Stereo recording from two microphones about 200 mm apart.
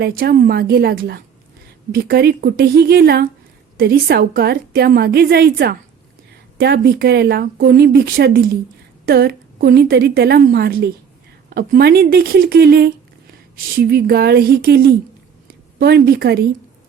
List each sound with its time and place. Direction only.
0.0 s a woman's voice: 50° right (ahead or behind)